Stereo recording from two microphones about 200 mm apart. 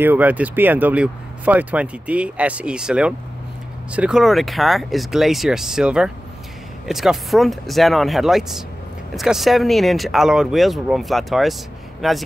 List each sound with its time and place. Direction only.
0.0 s speech: 10° right (ahead or behind)